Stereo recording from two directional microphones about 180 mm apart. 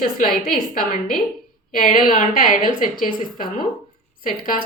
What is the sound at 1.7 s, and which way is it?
A woman's voice, 50° left (ahead or behind).